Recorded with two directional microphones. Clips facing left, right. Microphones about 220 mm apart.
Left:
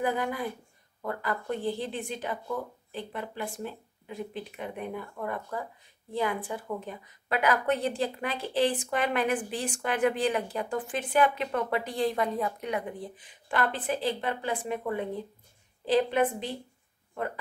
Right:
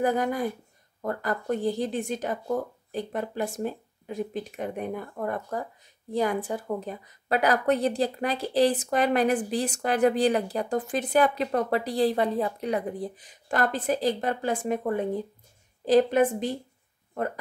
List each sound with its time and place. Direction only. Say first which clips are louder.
0.0 s a woman's voice: right 4 dB; 45° right (ahead or behind)